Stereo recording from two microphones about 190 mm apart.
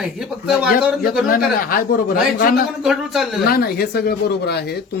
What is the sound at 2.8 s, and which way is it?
Speech, centre (ahead or behind).